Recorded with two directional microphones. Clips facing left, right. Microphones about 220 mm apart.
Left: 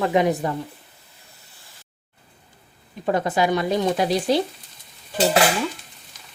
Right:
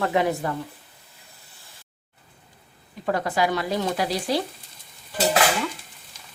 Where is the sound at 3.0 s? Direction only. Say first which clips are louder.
Left 3 dB; 20° left (ahead or behind).